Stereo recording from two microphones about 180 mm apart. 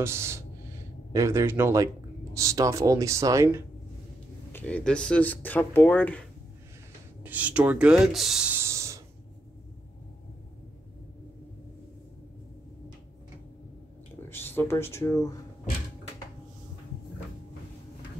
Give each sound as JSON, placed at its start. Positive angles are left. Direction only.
{"t": 0.0, "sound": "speech", "side_deg": -15}
{"t": 4.5, "sound": "speech", "side_deg": 10}
{"t": 7.2, "sound": "speech", "side_deg": -10}
{"t": 14.3, "sound": "speech", "side_deg": 10}